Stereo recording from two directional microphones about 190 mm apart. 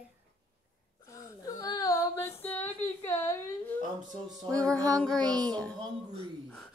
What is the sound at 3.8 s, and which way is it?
Speech, 40° right (ahead or behind).